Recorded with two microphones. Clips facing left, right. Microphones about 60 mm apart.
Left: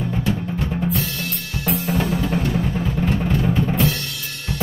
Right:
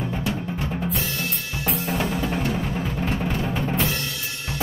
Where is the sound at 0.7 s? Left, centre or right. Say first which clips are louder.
Left 5 dB; centre.